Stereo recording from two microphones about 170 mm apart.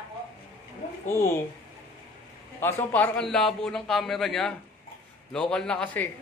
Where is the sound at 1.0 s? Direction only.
15° left (ahead or behind).